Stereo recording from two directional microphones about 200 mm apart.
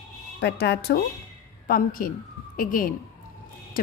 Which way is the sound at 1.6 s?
45° left (ahead or behind).